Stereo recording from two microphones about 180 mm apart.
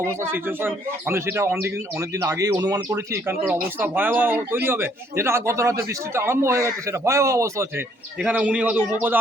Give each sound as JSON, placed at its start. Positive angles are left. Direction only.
{"t": 0.0, "sound": "speech", "side_deg": -15}
{"t": 3.8, "sound": "speech", "side_deg": -10}